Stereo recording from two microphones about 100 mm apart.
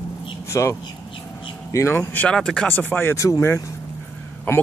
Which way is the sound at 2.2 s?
10° left (ahead or behind).